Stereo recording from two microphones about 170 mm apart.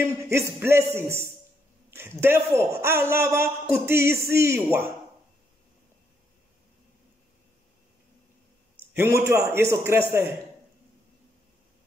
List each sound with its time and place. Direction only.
0.0 s a man's voice: 15° right (ahead or behind)
8.9 s a man's voice: 15° right (ahead or behind)